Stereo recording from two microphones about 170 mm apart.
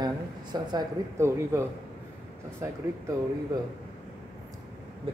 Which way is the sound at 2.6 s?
15° right (ahead or behind).